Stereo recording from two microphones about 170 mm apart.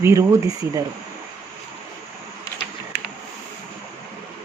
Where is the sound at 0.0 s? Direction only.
15° right (ahead or behind).